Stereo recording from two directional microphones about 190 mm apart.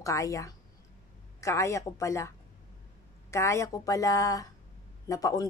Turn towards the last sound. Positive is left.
turn(degrees=20)  # may be behind; listen again after turning